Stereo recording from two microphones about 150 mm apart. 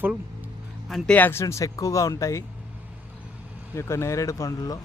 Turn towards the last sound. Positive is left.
turn(degrees=25)  # may be behind; listen again after turning